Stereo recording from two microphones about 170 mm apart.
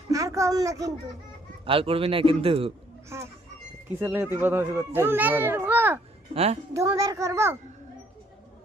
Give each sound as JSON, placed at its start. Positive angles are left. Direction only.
{"t": 0.1, "sound": "speech", "side_deg": -20}
{"t": 1.6, "sound": "a man's voice", "side_deg": -35}
{"t": 3.1, "sound": "a child's voice", "side_deg": -15}
{"t": 6.3, "sound": "a man's voice", "side_deg": -40}
{"t": 6.7, "sound": "a child's voice", "side_deg": -20}